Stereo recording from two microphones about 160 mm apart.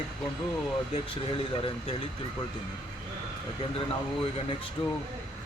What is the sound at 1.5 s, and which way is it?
Speech, 35° left (ahead or behind).